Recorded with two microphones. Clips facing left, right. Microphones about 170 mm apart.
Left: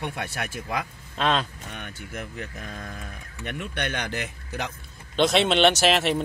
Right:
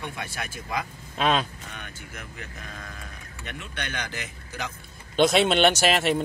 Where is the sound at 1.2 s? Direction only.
5° right (ahead or behind).